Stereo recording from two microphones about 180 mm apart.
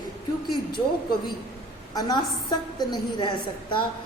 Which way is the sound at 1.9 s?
20° left (ahead or behind).